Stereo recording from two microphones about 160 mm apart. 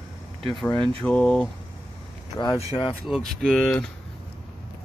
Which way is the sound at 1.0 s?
5° left (ahead or behind).